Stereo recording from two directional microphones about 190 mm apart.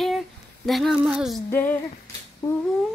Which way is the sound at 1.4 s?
10° left (ahead or behind).